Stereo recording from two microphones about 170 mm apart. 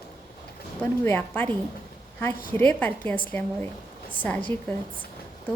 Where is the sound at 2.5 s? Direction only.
10° left (ahead or behind).